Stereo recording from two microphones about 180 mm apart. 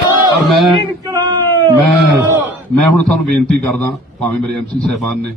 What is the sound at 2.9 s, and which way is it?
A man's voice, 5° left (ahead or behind).